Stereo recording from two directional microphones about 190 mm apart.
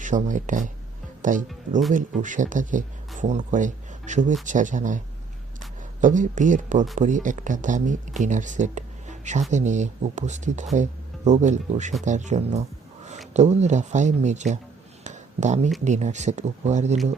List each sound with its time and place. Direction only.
0.0 s speech: 40° right (ahead or behind)
15.0 s a sound: 40° right (ahead or behind)
15.8 s speech: 40° right (ahead or behind)